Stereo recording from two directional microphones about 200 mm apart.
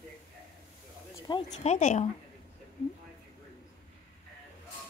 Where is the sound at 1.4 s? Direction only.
35° left (ahead or behind).